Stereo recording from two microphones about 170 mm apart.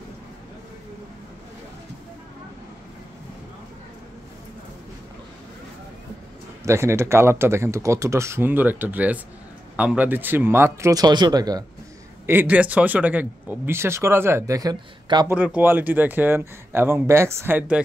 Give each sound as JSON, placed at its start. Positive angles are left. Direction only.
{"t": 6.6, "sound": "speech", "side_deg": -15}
{"t": 12.3, "sound": "speech", "side_deg": -10}
{"t": 15.2, "sound": "speech", "side_deg": -10}